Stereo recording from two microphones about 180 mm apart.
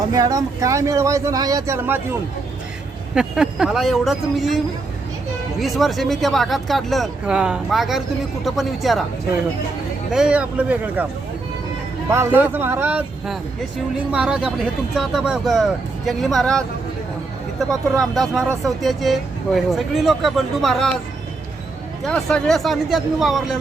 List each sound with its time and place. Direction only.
0.1 s speech: 20° right (ahead or behind)
3.2 s speech: 5° right (ahead or behind)
10.1 s speech: 5° right (ahead or behind)
12.0 s speech: 15° right (ahead or behind); by 16.6 s centre (ahead or behind)
18.0 s speech: centre (ahead or behind)
22.0 s speech: 5° left (ahead or behind)